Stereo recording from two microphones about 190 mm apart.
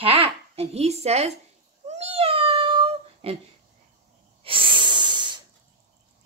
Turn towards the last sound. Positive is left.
turn(degrees=-25)  # may be behind; listen again after turning